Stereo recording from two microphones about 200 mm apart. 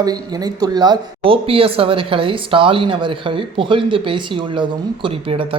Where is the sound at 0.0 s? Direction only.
20° right (ahead or behind).